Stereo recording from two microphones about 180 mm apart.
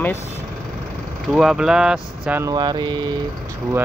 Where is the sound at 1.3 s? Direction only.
5° right (ahead or behind).